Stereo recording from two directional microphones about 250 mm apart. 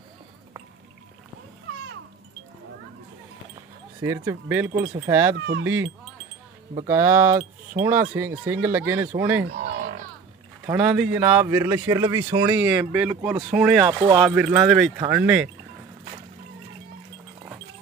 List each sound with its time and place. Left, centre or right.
4.0 s speech: centre
10.7 s speech: centre
13.8 s speech: centre
14.2 s speech: centre